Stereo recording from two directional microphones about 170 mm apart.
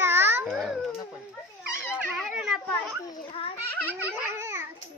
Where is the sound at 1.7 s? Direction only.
15° left (ahead or behind).